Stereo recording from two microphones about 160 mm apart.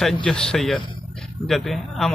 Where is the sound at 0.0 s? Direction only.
5° left (ahead or behind).